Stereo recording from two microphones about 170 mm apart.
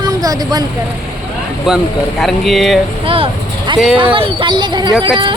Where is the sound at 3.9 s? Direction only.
30° right (ahead or behind).